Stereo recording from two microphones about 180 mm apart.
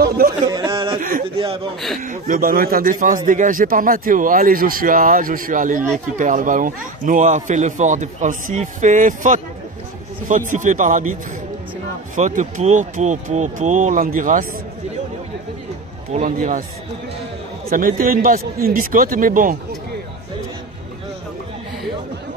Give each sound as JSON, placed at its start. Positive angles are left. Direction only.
{"t": 0.5, "sound": "a sound", "side_deg": -25}
{"t": 2.0, "sound": "speech", "side_deg": -50}
{"t": 12.2, "sound": "speech", "side_deg": -45}
{"t": 16.1, "sound": "speech", "side_deg": -45}
{"t": 17.6, "sound": "speech", "side_deg": -50}